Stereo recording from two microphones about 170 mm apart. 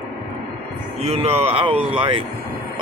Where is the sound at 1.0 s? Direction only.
35° right (ahead or behind).